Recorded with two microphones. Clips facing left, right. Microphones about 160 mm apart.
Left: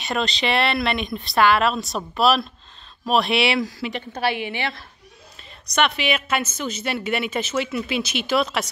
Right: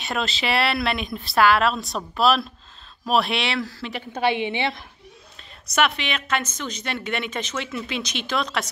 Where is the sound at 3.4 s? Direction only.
10° left (ahead or behind).